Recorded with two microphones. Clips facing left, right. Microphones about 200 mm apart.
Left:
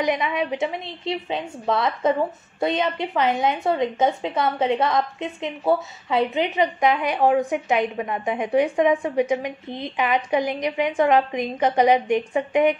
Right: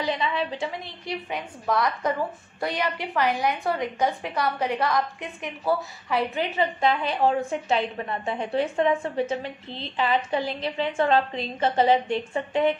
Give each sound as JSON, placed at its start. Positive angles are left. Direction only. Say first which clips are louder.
{"t": 0.0, "sound": "a woman's voice", "louder": "left 4 dB", "side_deg": 15}